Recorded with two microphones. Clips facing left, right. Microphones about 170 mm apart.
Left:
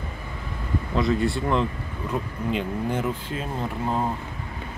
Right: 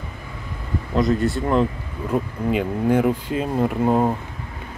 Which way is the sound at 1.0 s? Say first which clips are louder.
Right 3 dB; centre (ahead or behind).